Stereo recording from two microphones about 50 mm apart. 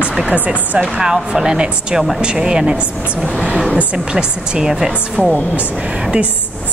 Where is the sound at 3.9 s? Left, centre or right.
Centre.